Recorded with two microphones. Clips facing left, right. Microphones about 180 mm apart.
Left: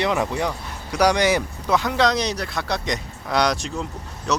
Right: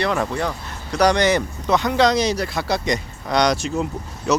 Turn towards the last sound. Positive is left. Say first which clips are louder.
# right 4 dB
turn(degrees=-5)  # may be behind; listen again after turning